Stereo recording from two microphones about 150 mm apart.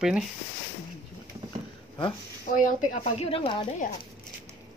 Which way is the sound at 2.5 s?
60° left (ahead or behind).